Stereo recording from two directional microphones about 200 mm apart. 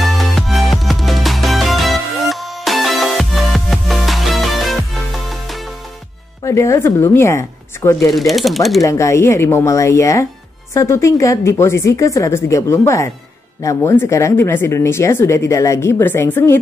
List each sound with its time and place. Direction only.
0.0 s music: centre (ahead or behind)
6.4 s speech: 15° left (ahead or behind)
8.1 s speech: centre (ahead or behind)
8.8 s speech: 15° left (ahead or behind)